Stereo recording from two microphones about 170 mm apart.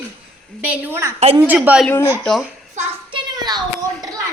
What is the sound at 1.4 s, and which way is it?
A woman's voice, 10° right (ahead or behind).